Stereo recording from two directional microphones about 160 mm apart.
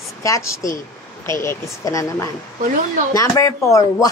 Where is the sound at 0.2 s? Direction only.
20° left (ahead or behind).